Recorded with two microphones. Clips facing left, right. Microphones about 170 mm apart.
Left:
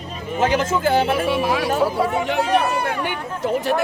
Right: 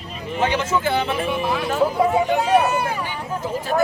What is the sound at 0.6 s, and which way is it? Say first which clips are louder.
Speech: left 3 dB; 45° left (ahead or behind).